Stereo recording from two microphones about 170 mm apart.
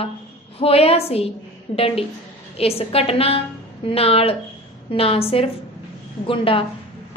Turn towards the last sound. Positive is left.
turn(degrees=30)  # may be behind; listen again after turning